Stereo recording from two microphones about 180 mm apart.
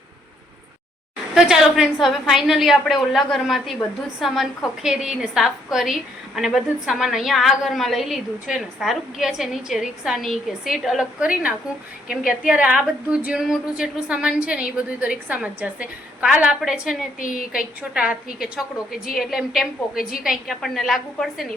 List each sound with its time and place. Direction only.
1.4 s a woman's voice: 5° right (ahead or behind)
17.2 s a woman's voice: 50° left (ahead or behind)
17.5 s a woman's voice: 5° right (ahead or behind)
20.0 s a woman's voice: 50° left (ahead or behind)
20.2 s a woman's voice: centre (ahead or behind)